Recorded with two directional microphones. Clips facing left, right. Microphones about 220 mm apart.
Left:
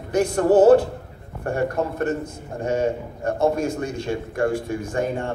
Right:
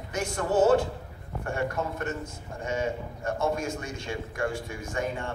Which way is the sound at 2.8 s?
35° left (ahead or behind).